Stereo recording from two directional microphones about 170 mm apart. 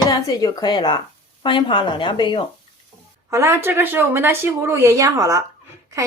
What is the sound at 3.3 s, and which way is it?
A woman's voice, 15° right (ahead or behind).